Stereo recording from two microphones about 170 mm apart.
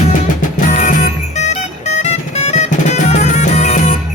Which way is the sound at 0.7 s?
45° left (ahead or behind).